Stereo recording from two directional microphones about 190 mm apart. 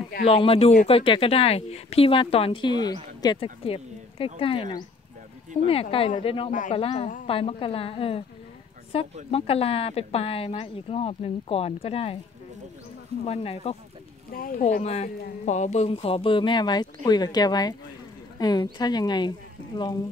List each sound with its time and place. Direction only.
0.2 s a woman's voice: 30° left (ahead or behind)
13.2 s speech: 30° left (ahead or behind)
14.3 s a woman's voice: 50° left (ahead or behind); by 19.3 s 20° left (ahead or behind)